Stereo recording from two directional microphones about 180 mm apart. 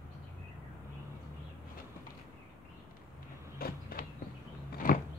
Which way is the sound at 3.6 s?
55° left (ahead or behind).